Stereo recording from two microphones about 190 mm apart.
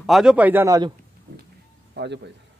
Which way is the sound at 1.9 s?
65° right (ahead or behind).